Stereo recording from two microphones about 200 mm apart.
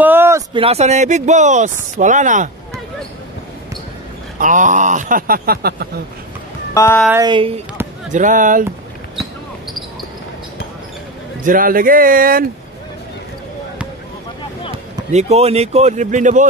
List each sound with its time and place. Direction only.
0.0 s a sound: 10° right (ahead or behind)
0.6 s speech: 30° right (ahead or behind)
4.4 s speech: 40° right (ahead or behind)
6.7 s speech: 15° left (ahead or behind)
7.1 s speech: 20° right (ahead or behind)
8.1 s speech: 40° right (ahead or behind)
11.4 s speech: 45° right (ahead or behind)
15.0 s speech: 35° right (ahead or behind)